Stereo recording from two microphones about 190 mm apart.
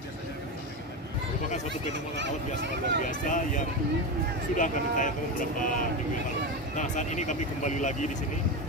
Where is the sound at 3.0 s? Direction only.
45° left (ahead or behind).